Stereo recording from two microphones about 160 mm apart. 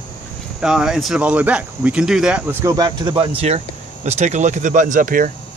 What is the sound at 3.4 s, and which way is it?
Speech, 40° right (ahead or behind).